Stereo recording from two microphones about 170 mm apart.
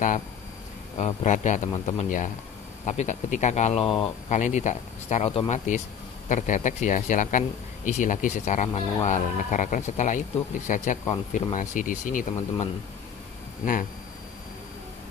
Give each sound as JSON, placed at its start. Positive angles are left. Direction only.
{"t": 0.9, "sound": "speech", "side_deg": 45}
{"t": 2.0, "sound": "speech", "side_deg": 50}
{"t": 3.8, "sound": "speech", "side_deg": 30}
{"t": 4.3, "sound": "speech", "side_deg": 45}